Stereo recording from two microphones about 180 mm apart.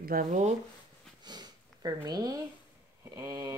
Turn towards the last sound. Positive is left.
turn(degrees=-15)  # may be behind; listen again after turning